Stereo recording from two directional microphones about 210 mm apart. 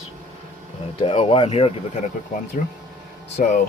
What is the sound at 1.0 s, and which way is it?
Speech, 25° left (ahead or behind).